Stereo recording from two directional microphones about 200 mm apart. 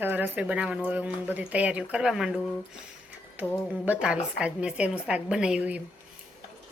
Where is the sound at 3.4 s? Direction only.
10° left (ahead or behind).